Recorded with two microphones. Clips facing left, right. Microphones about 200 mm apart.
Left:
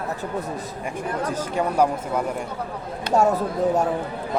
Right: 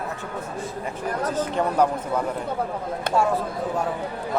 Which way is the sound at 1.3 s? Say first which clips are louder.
Right 2 dB; 10° left (ahead or behind).